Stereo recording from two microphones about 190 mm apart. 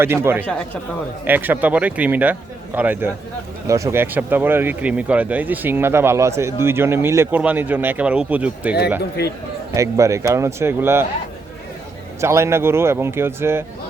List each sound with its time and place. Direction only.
0.0 s speech: 15° right (ahead or behind)
9.0 s speech: 60° left (ahead or behind)
9.7 s speech: 15° right (ahead or behind)
12.2 s speech: 15° right (ahead or behind)